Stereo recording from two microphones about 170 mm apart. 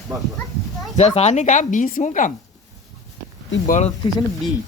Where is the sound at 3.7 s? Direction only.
45° left (ahead or behind).